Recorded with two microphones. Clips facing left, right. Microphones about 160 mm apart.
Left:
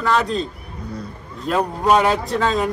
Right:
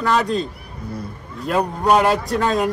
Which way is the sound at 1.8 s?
5° right (ahead or behind).